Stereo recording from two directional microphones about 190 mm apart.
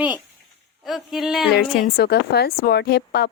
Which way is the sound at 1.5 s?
55° left (ahead or behind).